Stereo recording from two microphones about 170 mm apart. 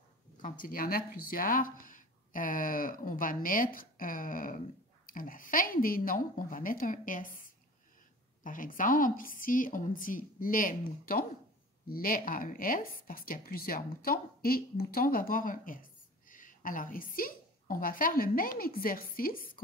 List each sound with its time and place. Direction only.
0.4 s a woman's voice: 55° left (ahead or behind)
8.5 s a woman's voice: 55° left (ahead or behind)